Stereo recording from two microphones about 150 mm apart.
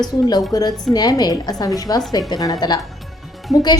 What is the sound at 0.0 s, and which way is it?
A woman's voice, 25° left (ahead or behind).